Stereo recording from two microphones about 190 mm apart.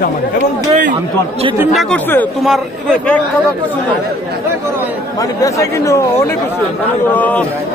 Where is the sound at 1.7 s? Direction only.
Centre (ahead or behind).